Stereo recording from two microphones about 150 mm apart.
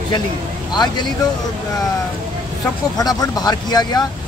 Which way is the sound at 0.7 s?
30° left (ahead or behind).